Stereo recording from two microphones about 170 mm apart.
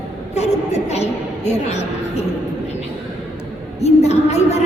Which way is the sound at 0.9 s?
40° left (ahead or behind).